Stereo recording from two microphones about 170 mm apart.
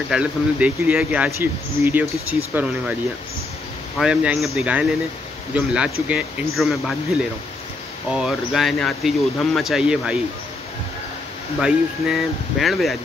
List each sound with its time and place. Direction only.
0.1 s speech: 5° right (ahead or behind)
4.0 s speech: 5° right (ahead or behind)
8.1 s speech: 5° right (ahead or behind)
11.6 s speech: centre (ahead or behind)